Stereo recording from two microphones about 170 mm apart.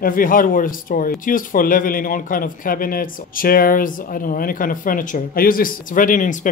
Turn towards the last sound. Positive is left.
turn(degrees=50)  # may be behind; listen again after turning